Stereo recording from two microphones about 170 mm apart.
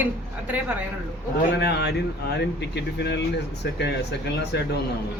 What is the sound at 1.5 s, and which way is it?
Speech, 75° left (ahead or behind).